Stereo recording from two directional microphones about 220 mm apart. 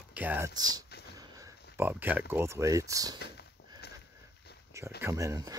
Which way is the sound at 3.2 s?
50° left (ahead or behind).